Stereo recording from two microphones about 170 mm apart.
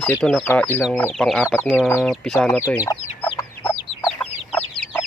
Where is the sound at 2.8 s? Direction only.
20° left (ahead or behind).